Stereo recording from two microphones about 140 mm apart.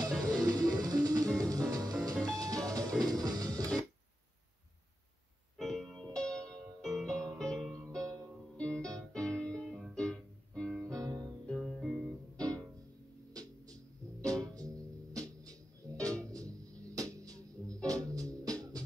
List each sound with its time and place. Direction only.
0.0 s music: 25° right (ahead or behind)
5.6 s music: centre (ahead or behind)
10.8 s music: 25° right (ahead or behind)
11.4 s music: 5° left (ahead or behind)
13.3 s music: 25° right (ahead or behind)
16.3 s music: 25° right (ahead or behind)